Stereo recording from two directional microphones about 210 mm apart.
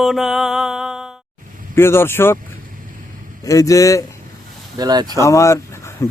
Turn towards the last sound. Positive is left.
turn(degrees=15)  # may be behind; listen again after turning